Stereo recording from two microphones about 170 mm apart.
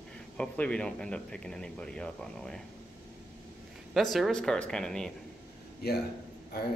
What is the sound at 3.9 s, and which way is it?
Speech, centre (ahead or behind).